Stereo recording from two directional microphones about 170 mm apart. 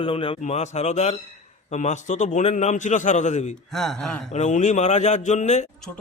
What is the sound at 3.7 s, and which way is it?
Speech, centre (ahead or behind).